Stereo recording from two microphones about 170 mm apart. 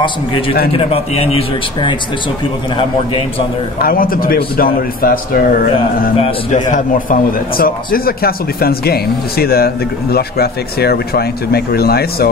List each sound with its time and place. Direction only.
0.7 s a man's voice: 35° left (ahead or behind)
3.8 s a man's voice: 60° left (ahead or behind)
6.1 s a man's voice: 35° left (ahead or behind)
6.7 s a man's voice: 55° left (ahead or behind)